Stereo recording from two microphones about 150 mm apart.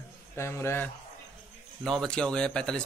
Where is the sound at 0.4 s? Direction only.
15° left (ahead or behind).